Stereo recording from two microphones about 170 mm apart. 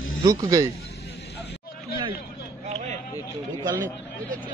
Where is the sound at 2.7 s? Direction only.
40° right (ahead or behind).